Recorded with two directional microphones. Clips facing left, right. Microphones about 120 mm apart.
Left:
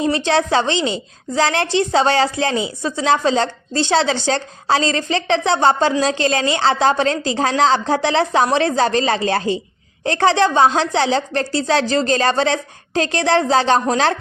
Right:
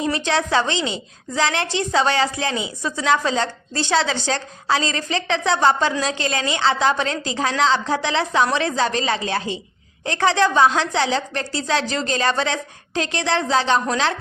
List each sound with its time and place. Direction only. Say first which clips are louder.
0.0 s a woman's voice: left 4 dB; 30° left (ahead or behind)